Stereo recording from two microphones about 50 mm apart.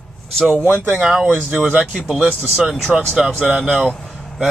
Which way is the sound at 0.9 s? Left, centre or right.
Centre.